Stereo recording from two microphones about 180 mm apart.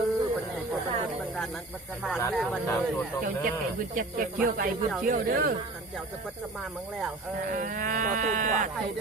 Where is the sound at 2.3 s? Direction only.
Centre (ahead or behind).